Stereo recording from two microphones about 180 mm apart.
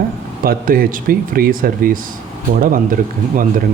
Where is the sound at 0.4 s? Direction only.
55° right (ahead or behind).